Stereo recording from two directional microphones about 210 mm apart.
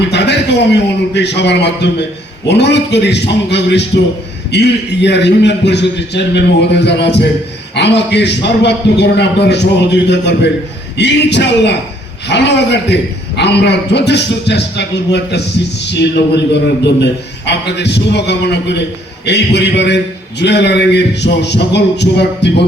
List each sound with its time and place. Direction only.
0.1 s a man's voice: 55° left (ahead or behind)